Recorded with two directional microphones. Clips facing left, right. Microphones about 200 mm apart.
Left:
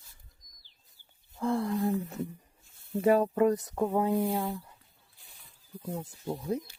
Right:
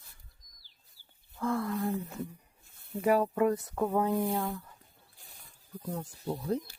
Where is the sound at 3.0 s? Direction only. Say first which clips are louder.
Left 2 dB; 25° left (ahead or behind).